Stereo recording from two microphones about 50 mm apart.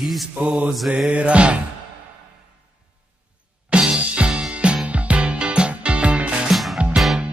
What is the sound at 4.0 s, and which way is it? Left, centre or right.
Music, right.